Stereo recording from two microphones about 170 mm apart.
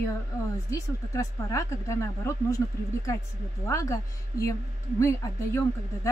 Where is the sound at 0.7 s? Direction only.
20° left (ahead or behind).